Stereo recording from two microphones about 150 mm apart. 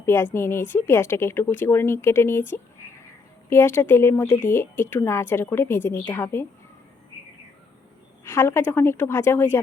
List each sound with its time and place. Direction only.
0.0 s a woman's voice: 15° left (ahead or behind)
8.2 s speech: 15° left (ahead or behind)